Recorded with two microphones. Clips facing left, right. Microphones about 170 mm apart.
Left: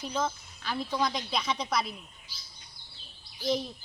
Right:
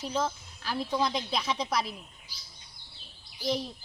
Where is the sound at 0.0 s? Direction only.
Centre (ahead or behind).